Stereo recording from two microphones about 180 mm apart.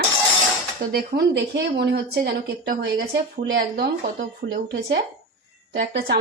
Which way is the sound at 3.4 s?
75° right (ahead or behind).